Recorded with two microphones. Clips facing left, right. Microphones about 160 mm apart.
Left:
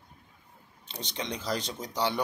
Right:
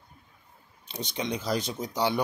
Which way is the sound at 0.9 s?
10° right (ahead or behind).